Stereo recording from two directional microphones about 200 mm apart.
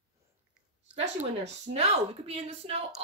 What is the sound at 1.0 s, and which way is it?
A woman's voice, 30° right (ahead or behind).